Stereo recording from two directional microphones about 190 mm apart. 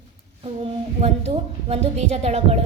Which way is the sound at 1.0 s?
35° right (ahead or behind).